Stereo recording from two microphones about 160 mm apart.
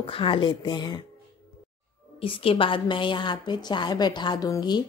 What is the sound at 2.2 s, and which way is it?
A woman's voice, 35° left (ahead or behind).